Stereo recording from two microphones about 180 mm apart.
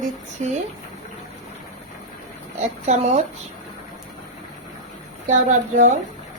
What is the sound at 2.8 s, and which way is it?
Speech, 40° right (ahead or behind).